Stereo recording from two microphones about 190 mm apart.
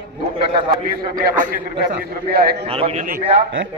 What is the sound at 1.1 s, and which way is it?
A man's voice, 45° right (ahead or behind).